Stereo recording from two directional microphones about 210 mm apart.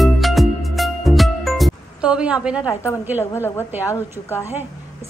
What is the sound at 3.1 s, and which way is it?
Speech, 10° right (ahead or behind).